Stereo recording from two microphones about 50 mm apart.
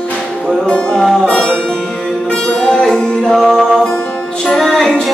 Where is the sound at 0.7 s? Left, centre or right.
Centre.